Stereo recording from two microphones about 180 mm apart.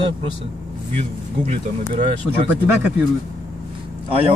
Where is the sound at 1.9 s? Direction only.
40° right (ahead or behind).